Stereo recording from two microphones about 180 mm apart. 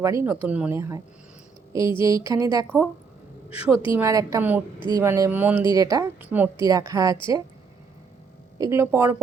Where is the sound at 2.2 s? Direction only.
20° right (ahead or behind).